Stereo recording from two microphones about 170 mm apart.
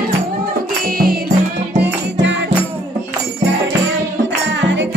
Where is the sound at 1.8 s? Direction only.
90° right.